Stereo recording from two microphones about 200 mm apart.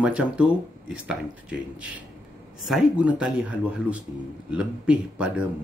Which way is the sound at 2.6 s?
5° right (ahead or behind).